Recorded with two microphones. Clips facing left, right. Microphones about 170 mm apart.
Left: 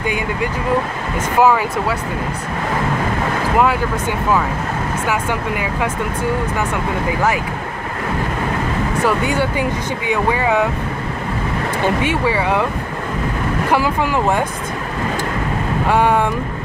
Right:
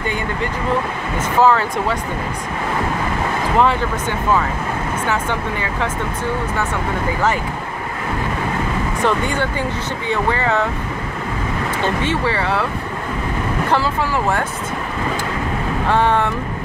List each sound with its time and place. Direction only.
1.4 s speech: 10° left (ahead or behind)
5.0 s speech: 10° left (ahead or behind)
9.0 s speech: 10° left (ahead or behind)
11.8 s speech: 10° left (ahead or behind)
13.7 s speech: 15° left (ahead or behind)
15.9 s speech: 10° left (ahead or behind)